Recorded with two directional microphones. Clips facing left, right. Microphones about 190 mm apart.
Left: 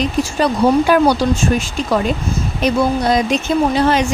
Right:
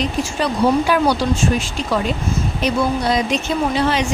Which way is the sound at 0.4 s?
50° left (ahead or behind).